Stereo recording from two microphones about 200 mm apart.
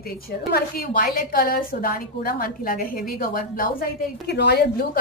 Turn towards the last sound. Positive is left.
turn(degrees=55)  # may be behind; listen again after turning